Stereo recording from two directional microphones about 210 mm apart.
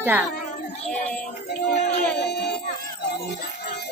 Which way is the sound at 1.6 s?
35° left (ahead or behind).